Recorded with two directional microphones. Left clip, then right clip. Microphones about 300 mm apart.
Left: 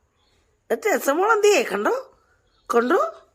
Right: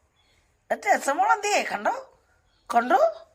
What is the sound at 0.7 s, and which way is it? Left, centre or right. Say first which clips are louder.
Speech: left 2 dB; centre.